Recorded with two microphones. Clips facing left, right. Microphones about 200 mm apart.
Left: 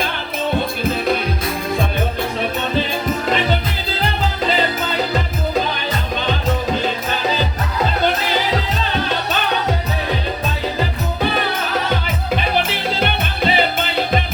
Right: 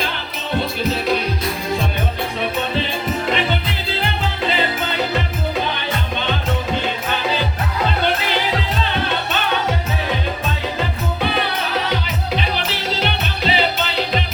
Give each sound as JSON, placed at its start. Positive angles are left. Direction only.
{"t": 4.0, "sound": "music", "side_deg": 40}
{"t": 12.5, "sound": "music", "side_deg": 50}